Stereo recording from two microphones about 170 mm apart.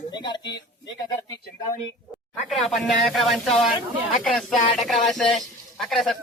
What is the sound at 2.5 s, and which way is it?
Speech, centre (ahead or behind).